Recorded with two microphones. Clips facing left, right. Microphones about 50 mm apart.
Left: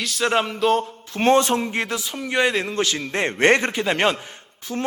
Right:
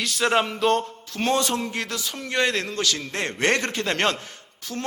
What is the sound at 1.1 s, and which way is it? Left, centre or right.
A man's voice, left.